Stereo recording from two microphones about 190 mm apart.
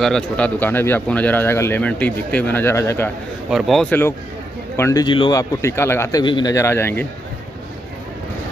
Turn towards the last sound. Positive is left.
turn(degrees=10)  # may be behind; listen again after turning